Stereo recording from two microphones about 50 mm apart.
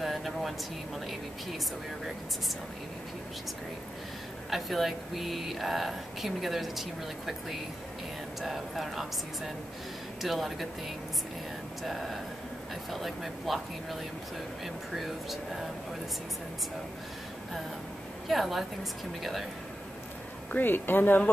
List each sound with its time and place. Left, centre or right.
0.0 s a sound: centre
4.5 s speech: centre
11.8 s speech: centre
15.0 s speech: centre
18.3 s speech: centre
20.5 s speech: left